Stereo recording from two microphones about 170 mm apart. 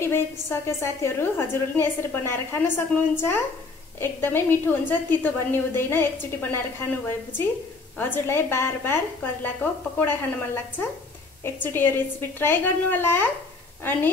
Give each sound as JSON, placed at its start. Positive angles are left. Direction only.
{"t": 0.0, "sound": "a woman's voice", "side_deg": 15}
{"t": 8.0, "sound": "a woman's voice", "side_deg": 10}